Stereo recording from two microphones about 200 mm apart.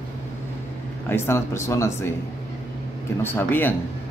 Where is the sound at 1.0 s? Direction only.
10° left (ahead or behind).